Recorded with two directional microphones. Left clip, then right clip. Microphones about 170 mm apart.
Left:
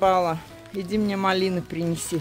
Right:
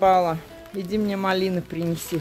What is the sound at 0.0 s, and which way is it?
Speech, 10° left (ahead or behind).